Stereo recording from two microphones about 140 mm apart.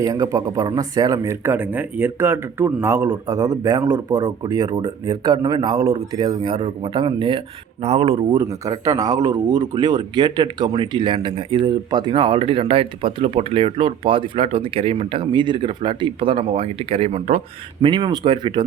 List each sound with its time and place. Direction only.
0.0 s speech: 25° right (ahead or behind)
7.8 s speech: 45° right (ahead or behind)
8.4 s speech: 25° right (ahead or behind); by 17.4 s 50° right (ahead or behind)
17.8 s speech: 35° right (ahead or behind)